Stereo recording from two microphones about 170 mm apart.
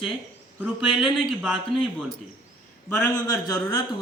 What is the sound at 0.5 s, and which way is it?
Speech, 5° right (ahead or behind).